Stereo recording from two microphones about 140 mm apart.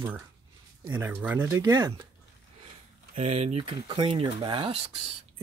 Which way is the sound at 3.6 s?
35° right (ahead or behind).